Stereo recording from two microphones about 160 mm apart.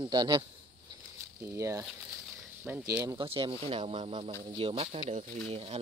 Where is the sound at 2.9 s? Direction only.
15° right (ahead or behind).